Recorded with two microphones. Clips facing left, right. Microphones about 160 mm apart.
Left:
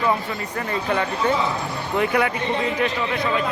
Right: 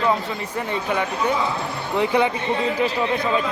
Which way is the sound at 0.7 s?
10° right (ahead or behind).